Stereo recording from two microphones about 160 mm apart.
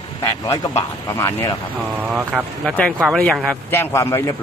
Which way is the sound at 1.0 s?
20° left (ahead or behind).